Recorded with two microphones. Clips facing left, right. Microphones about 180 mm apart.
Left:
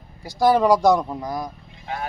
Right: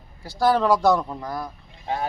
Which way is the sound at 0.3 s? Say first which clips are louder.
Left 3 dB; 15° left (ahead or behind).